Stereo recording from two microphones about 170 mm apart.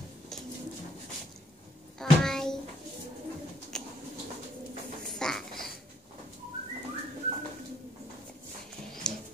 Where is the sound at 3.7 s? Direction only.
5° left (ahead or behind).